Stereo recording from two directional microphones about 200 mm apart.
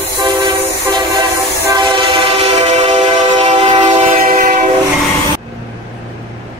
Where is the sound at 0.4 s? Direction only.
20° right (ahead or behind); by 4.6 s 40° right (ahead or behind).